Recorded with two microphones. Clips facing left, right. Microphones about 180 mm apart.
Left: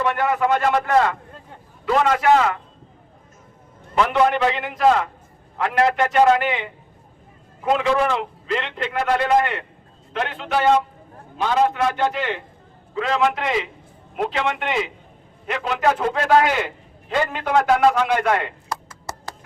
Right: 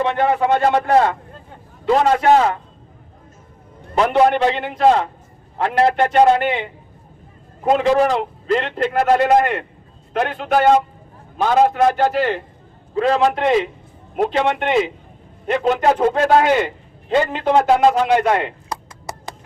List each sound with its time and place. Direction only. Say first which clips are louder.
0.0 s a man's voice: right 3 dB; 25° right (ahead or behind)
3.9 s a man's voice: right 3 dB; 35° right (ahead or behind)
7.6 s a man's voice: right 4 dB; 40° right (ahead or behind)
17.1 s a man's voice: right 5 dB; 30° right (ahead or behind)
19.1 s a sound: right 2 dB; 15° right (ahead or behind)